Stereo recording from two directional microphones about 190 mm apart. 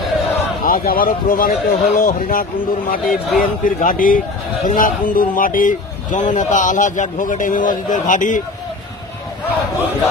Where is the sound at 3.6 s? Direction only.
45° left (ahead or behind).